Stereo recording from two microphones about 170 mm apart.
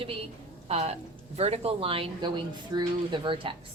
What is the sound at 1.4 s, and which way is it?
Speech, 40° right (ahead or behind).